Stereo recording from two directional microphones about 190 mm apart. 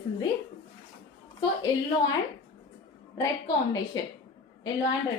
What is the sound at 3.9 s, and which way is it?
Speech, 20° left (ahead or behind).